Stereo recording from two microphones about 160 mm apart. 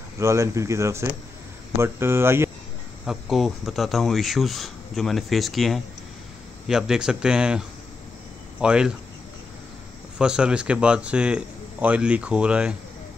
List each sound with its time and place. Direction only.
0.2 s a man's voice: 20° right (ahead or behind)
3.1 s speech: centre (ahead or behind)
10.1 s a man's voice: 5° right (ahead or behind)